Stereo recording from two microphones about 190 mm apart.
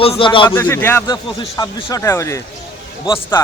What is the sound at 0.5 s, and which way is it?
Speech, 10° left (ahead or behind).